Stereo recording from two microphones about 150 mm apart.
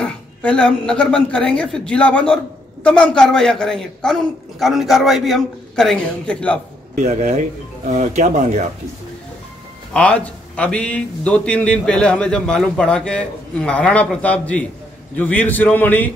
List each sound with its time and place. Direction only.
0.0 s speech: 10° left (ahead or behind)
7.0 s speech: 50° right (ahead or behind)
9.9 s a man's voice: 10° left (ahead or behind)